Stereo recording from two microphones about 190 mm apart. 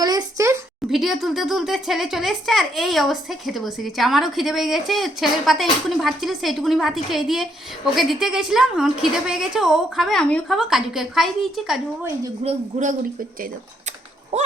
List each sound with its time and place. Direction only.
0.0 s a sound: 20° right (ahead or behind)
0.9 s speech: centre (ahead or behind)
12.4 s speech: 35° right (ahead or behind)